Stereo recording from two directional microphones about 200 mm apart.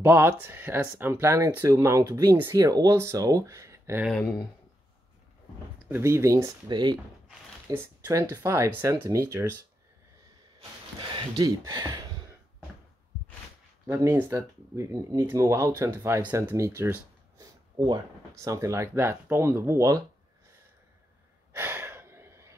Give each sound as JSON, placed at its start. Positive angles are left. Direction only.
{"t": 0.0, "sound": "speech", "side_deg": -10}
{"t": 5.9, "sound": "speech", "side_deg": -10}
{"t": 11.0, "sound": "speech", "side_deg": -20}
{"t": 13.8, "sound": "speech", "side_deg": -10}
{"t": 21.5, "sound": "gasp", "side_deg": -10}